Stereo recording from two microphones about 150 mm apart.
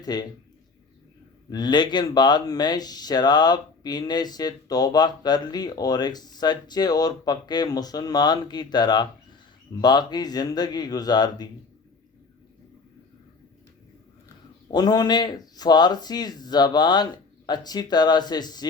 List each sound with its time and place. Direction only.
0.0 s speech: 25° left (ahead or behind)
1.5 s speech: 30° left (ahead or behind)
14.7 s speech: 25° left (ahead or behind)